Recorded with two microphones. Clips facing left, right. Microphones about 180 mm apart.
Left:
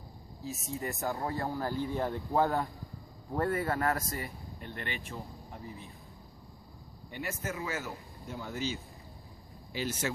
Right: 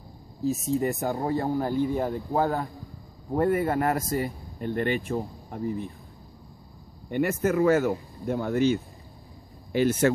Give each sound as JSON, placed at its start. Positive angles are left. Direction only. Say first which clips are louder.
{"t": 0.5, "sound": "speech", "louder": "right 12 dB", "side_deg": -30}
{"t": 3.3, "sound": "speech", "louder": "right 7 dB", "side_deg": -15}
{"t": 4.6, "sound": "speech", "louder": "right 15 dB", "side_deg": -45}
{"t": 7.1, "sound": "speech", "louder": "right 14 dB", "side_deg": -60}